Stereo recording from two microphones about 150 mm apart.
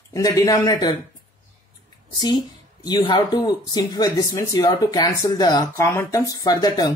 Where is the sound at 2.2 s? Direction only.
25° left (ahead or behind).